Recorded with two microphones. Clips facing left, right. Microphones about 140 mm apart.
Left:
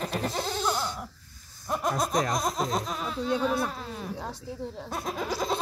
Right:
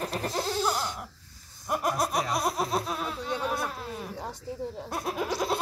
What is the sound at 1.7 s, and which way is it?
Speech, 10° right (ahead or behind).